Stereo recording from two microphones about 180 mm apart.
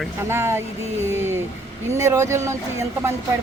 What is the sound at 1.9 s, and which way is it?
Speech, 15° right (ahead or behind).